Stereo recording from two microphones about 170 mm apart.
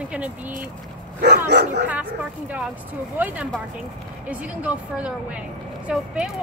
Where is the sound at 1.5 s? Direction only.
75° right (ahead or behind).